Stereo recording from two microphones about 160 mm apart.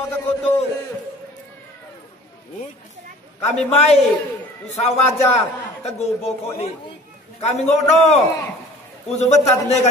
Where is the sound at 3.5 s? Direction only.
40° left (ahead or behind).